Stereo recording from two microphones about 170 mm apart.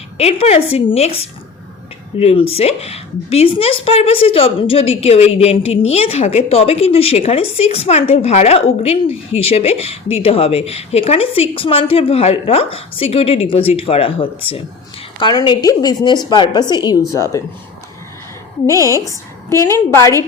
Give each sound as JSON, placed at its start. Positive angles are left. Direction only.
{"t": 0.2, "sound": "a woman's voice", "side_deg": 40}
{"t": 18.7, "sound": "a woman's voice", "side_deg": -20}
{"t": 19.0, "sound": "a woman's voice", "side_deg": 15}